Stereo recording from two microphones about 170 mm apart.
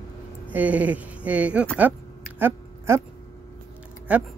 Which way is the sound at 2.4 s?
15° right (ahead or behind).